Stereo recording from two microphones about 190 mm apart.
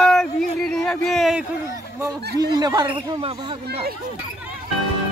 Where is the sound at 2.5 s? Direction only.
20° right (ahead or behind).